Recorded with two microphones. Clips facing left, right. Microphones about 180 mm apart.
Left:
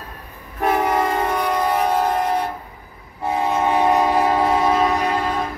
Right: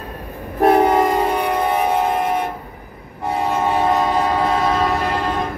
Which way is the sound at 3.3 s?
10° left (ahead or behind).